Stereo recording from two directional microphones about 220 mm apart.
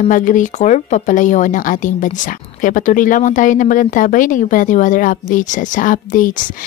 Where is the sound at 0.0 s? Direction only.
35° left (ahead or behind).